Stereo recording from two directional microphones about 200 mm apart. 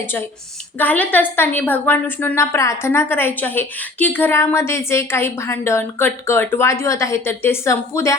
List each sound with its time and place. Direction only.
0.0 s a woman's voice: 10° left (ahead or behind)